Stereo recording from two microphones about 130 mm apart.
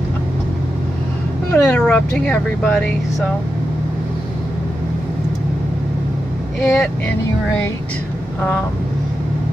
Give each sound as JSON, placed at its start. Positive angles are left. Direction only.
{"t": 1.5, "sound": "speech", "side_deg": 10}
{"t": 6.6, "sound": "speech", "side_deg": 5}